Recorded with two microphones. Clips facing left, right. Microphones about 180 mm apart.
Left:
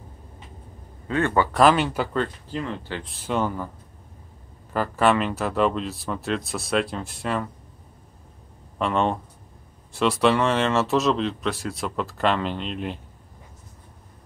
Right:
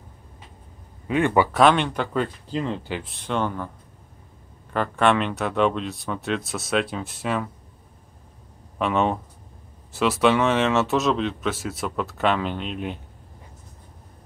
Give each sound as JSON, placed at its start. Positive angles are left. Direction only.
{"t": 1.0, "sound": "speech", "side_deg": -15}
{"t": 1.5, "sound": "speech", "side_deg": 0}
{"t": 2.1, "sound": "speech", "side_deg": -15}
{"t": 3.0, "sound": "speech", "side_deg": 0}
{"t": 4.7, "sound": "speech", "side_deg": 5}
{"t": 8.7, "sound": "speech", "side_deg": -5}